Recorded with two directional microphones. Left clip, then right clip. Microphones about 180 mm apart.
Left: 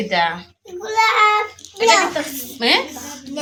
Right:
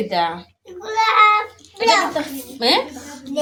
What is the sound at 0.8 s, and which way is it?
Child singing, 25° left (ahead or behind).